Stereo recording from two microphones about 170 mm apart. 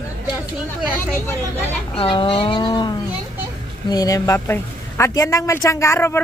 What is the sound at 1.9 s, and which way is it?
A woman's voice, 30° left (ahead or behind).